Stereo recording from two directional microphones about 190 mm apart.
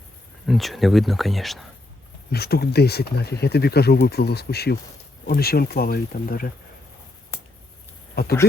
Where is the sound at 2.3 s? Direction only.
55° left (ahead or behind).